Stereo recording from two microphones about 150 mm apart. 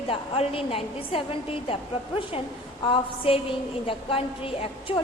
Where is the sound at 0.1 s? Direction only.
40° left (ahead or behind).